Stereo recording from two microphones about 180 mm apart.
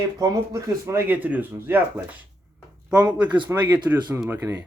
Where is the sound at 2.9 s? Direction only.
20° right (ahead or behind).